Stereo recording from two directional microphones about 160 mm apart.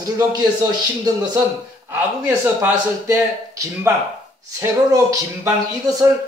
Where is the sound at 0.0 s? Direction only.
25° right (ahead or behind).